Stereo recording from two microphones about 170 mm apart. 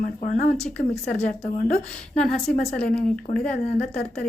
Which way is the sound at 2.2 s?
Centre (ahead or behind).